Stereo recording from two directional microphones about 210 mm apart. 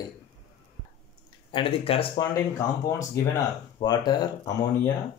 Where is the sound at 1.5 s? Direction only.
25° left (ahead or behind).